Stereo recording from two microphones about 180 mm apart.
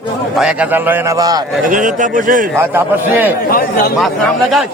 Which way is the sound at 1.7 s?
45° right (ahead or behind).